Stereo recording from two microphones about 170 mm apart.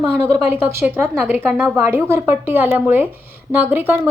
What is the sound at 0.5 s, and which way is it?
A woman's voice, 15° right (ahead or behind).